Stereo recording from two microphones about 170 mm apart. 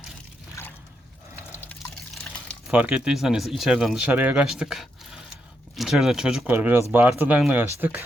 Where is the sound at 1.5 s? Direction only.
15° left (ahead or behind).